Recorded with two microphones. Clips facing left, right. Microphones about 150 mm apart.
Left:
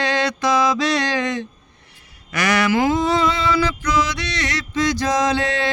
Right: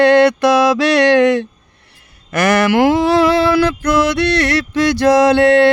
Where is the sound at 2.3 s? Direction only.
50° right (ahead or behind).